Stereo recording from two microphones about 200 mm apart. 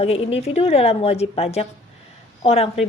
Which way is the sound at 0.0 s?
30° left (ahead or behind).